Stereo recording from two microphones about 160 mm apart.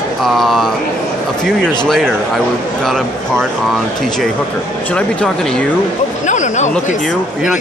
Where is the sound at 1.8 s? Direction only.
Centre (ahead or behind).